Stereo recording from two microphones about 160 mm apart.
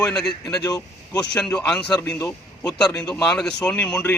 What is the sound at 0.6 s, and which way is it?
Speech, 25° left (ahead or behind).